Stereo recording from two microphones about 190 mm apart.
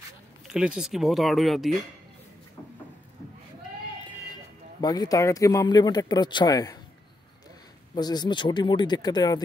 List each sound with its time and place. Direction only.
0.5 s speech: 5° right (ahead or behind)
4.8 s speech: 20° left (ahead or behind)
7.9 s speech: 20° left (ahead or behind)